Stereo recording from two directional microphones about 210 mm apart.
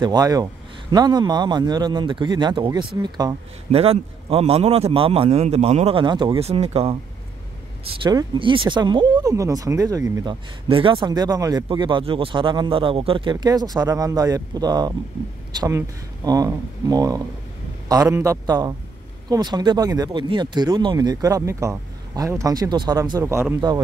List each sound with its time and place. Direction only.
0.0 s speech: 20° right (ahead or behind)
16.3 s speech: 15° right (ahead or behind)